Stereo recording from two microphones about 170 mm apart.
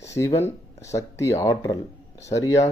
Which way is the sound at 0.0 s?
15° left (ahead or behind).